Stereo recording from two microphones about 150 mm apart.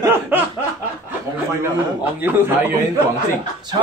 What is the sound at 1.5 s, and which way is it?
Speech, 15° right (ahead or behind).